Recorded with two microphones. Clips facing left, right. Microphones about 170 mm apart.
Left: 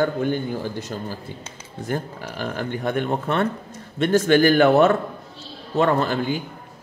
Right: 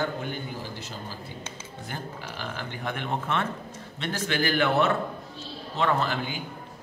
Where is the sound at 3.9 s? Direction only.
45° left (ahead or behind).